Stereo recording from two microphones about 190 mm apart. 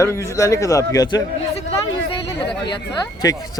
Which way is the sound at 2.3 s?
25° left (ahead or behind).